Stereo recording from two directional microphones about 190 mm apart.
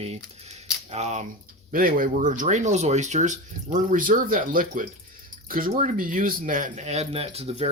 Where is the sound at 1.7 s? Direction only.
45° right (ahead or behind).